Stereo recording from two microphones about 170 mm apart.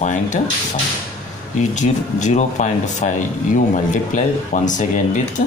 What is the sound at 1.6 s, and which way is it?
Speech, 45° left (ahead or behind).